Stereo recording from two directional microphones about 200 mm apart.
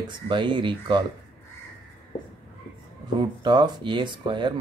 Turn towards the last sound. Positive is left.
turn(degrees=-25)  # may be behind; listen again after turning